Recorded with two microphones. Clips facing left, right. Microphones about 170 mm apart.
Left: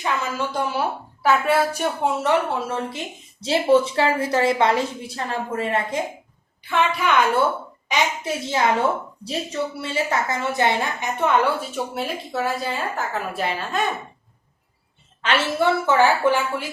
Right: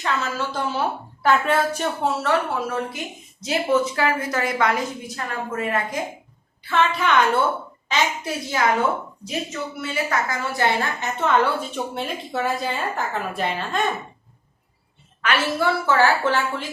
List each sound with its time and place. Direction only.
0.0 s a woman's voice: 15° left (ahead or behind)
6.7 s a woman's voice: 15° left (ahead or behind)
15.2 s a woman's voice: 25° left (ahead or behind)